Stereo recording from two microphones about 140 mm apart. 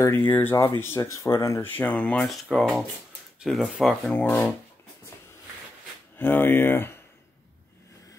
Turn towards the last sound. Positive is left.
turn(degrees=15)  # may be behind; listen again after turning